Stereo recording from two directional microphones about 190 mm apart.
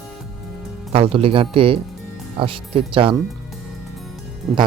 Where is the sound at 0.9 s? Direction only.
30° right (ahead or behind).